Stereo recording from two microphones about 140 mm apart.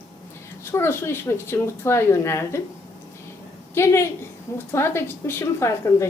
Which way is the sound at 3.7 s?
20° left (ahead or behind).